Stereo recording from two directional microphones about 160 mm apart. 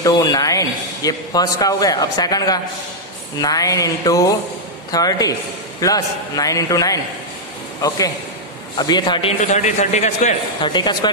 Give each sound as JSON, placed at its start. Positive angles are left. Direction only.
{"t": 0.0, "sound": "a man's voice", "side_deg": 20}
{"t": 8.7, "sound": "a man's voice", "side_deg": 25}
{"t": 9.4, "sound": "a man's voice", "side_deg": 45}
{"t": 10.6, "sound": "a man's voice", "side_deg": 30}